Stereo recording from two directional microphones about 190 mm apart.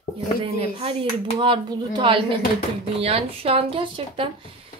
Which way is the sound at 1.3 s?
25° right (ahead or behind).